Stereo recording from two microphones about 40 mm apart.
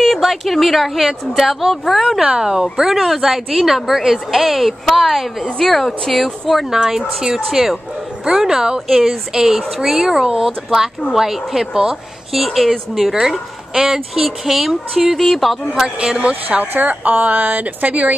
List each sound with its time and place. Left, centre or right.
0.0 s speech: centre
2.2 s speech: centre
2.8 s speech: centre
6.7 s speech: centre
9.3 s speech: centre
12.3 s speech: centre
15.1 s speech: centre
15.7 s speech: centre
16.2 s speech: right
16.7 s speech: right